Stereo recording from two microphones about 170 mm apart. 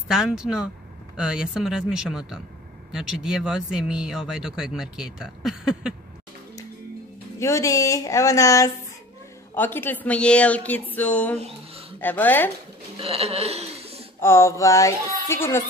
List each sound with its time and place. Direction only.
0.1 s speech: centre (ahead or behind)
7.3 s a woman's voice: 15° left (ahead or behind)
11.3 s a sound: 35° right (ahead or behind)
12.0 s a woman's voice: 10° left (ahead or behind)
12.9 s speech: 35° right (ahead or behind)
14.2 s a woman's voice: 15° left (ahead or behind)